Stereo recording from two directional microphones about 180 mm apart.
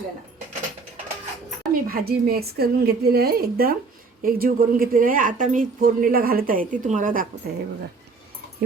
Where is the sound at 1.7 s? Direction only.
55° right (ahead or behind).